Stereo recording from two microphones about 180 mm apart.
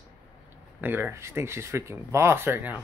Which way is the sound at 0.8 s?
10° right (ahead or behind).